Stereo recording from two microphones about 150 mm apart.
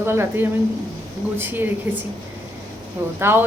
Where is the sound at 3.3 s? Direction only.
15° right (ahead or behind).